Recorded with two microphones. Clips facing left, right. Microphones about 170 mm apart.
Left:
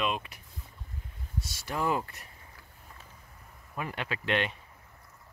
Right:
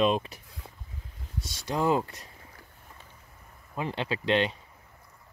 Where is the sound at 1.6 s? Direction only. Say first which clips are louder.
Right 5 dB; 25° right (ahead or behind).